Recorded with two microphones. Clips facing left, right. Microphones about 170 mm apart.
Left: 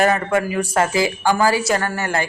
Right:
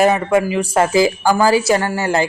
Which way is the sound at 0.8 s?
35° right (ahead or behind).